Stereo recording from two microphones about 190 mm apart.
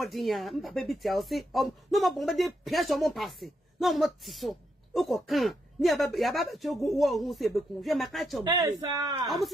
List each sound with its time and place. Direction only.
0.0 s speech: centre (ahead or behind)
8.5 s speech: 20° right (ahead or behind)